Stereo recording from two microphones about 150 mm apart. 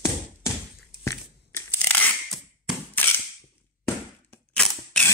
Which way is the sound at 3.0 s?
15° left (ahead or behind).